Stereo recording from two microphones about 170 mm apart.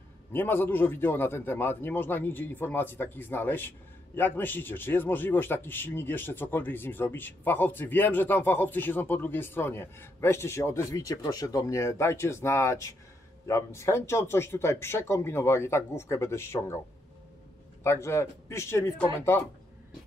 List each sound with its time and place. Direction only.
0.3 s a man's voice: 15° left (ahead or behind)
17.8 s a man's voice: 15° left (ahead or behind)